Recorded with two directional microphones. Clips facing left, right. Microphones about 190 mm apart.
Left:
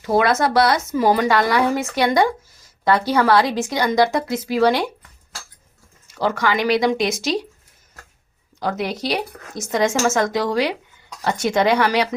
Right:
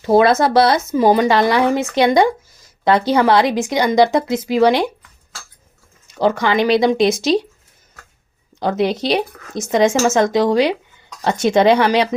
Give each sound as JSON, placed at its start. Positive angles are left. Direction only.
{"t": 0.0, "sound": "speech", "side_deg": -30}
{"t": 6.1, "sound": "speech", "side_deg": -20}
{"t": 8.5, "sound": "speech", "side_deg": -25}